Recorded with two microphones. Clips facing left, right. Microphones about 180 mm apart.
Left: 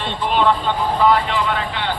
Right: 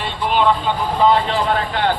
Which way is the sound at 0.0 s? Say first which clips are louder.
Right 1 dB; centre (ahead or behind).